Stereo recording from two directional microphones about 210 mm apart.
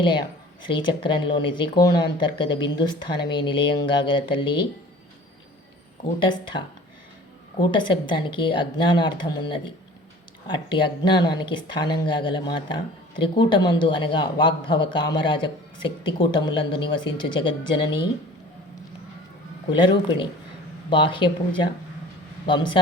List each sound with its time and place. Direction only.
0.0 s speech: 20° left (ahead or behind)
6.1 s speech: 20° left (ahead or behind)
20.9 s speech: 25° left (ahead or behind)